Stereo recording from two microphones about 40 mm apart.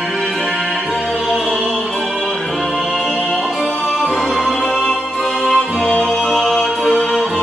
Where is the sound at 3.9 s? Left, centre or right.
Centre.